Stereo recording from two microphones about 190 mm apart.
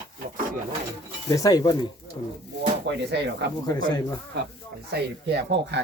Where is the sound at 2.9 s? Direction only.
65° right (ahead or behind).